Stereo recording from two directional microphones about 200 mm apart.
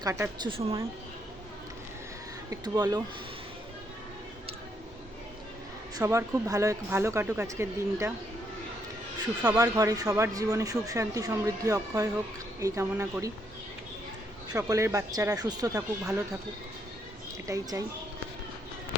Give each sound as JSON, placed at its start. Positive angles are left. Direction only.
{"t": 0.0, "sound": "speech", "side_deg": -15}
{"t": 0.5, "sound": "speech", "side_deg": -25}
{"t": 2.5, "sound": "speech", "side_deg": -20}
{"t": 6.0, "sound": "speech", "side_deg": -15}
{"t": 9.4, "sound": "speech", "side_deg": -20}
{"t": 14.5, "sound": "speech", "side_deg": -15}
{"t": 17.4, "sound": "speech", "side_deg": -15}